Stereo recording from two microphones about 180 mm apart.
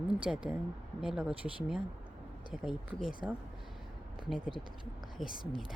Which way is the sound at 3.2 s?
5° right (ahead or behind).